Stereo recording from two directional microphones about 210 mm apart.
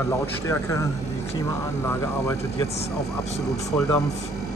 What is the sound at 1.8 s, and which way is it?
Speech, 15° left (ahead or behind).